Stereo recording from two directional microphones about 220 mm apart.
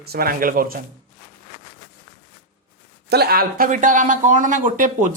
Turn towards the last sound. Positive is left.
turn(degrees=-35)  # may be behind; listen again after turning